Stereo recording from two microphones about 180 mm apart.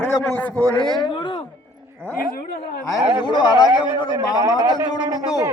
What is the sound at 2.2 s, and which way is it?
Speech, 55° left (ahead or behind).